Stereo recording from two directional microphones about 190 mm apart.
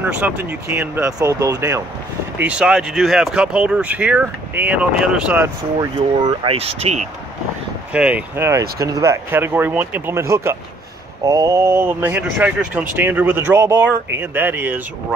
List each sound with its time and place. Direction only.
0.0 s speech: 10° right (ahead or behind)
6.2 s speech: 30° right (ahead or behind)
7.9 s speech: 5° right (ahead or behind)